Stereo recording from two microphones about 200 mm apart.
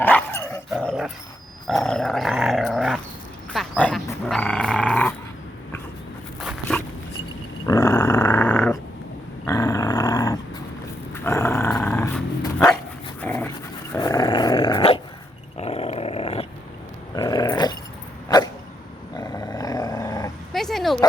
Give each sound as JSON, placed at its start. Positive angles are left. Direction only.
{"t": 0.0, "sound": "dog", "side_deg": 10}
{"t": 0.8, "sound": "dog", "side_deg": 0}
{"t": 6.4, "sound": "dog", "side_deg": -5}
{"t": 7.7, "sound": "dog", "side_deg": 15}
{"t": 9.5, "sound": "dog", "side_deg": 20}
{"t": 17.2, "sound": "dog", "side_deg": 20}
{"t": 19.1, "sound": "dog", "side_deg": 20}
{"t": 20.5, "sound": "dog", "side_deg": 0}